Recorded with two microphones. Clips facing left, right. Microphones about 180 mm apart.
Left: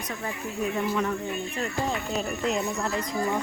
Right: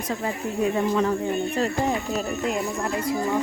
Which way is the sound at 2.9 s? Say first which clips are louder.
Right 5 dB; 5° right (ahead or behind).